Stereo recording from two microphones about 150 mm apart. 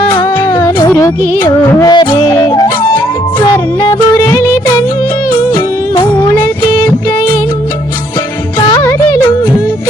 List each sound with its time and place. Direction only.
0.1 s music of bollywood: 30° left (ahead or behind)